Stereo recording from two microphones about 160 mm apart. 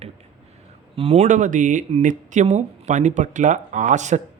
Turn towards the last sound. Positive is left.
turn(degrees=-50)  # may be behind; listen again after turning